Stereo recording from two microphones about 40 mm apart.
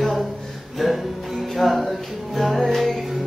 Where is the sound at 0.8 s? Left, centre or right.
Centre.